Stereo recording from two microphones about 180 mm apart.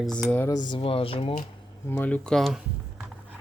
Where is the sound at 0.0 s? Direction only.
5° left (ahead or behind).